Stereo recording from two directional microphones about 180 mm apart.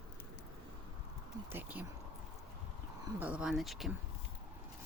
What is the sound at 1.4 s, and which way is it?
Speech, 10° right (ahead or behind).